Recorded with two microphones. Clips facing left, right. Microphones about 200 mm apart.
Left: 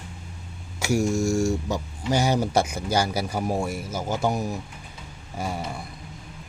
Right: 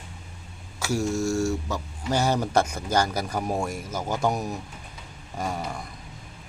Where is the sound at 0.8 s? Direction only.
15° left (ahead or behind).